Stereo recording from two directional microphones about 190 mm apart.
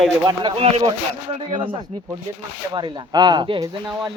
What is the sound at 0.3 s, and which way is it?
Speech, 25° right (ahead or behind).